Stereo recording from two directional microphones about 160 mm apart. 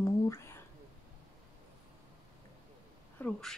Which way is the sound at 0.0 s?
15° left (ahead or behind).